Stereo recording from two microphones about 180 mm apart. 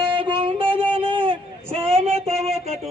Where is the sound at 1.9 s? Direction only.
35° right (ahead or behind).